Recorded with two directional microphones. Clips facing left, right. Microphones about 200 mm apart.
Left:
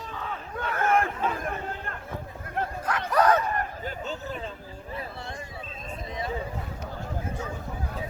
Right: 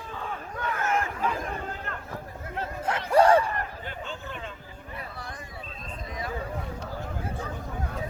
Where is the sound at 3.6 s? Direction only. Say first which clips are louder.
Left 3 dB; 40° left (ahead or behind).